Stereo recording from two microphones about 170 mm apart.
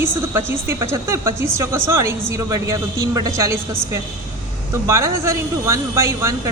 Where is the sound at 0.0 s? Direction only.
15° right (ahead or behind).